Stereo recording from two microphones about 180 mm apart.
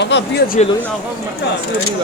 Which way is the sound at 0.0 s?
75° left (ahead or behind).